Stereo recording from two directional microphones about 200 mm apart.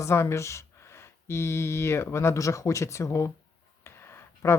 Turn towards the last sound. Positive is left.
turn(degrees=10)  # may be behind; listen again after turning